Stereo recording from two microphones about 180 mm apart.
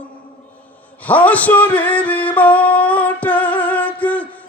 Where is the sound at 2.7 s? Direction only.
10° left (ahead or behind).